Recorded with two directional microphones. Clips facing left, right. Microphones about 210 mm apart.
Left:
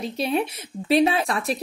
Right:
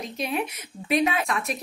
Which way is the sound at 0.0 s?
30° left (ahead or behind).